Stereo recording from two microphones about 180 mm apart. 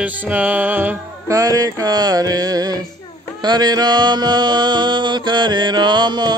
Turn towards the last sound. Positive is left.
turn(degrees=-25)  # may be behind; listen again after turning